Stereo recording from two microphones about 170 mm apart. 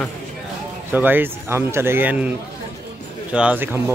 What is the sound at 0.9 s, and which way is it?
Speech, 10° right (ahead or behind).